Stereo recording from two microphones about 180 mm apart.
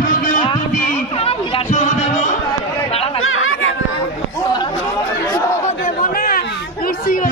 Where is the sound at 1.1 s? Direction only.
35° left (ahead or behind).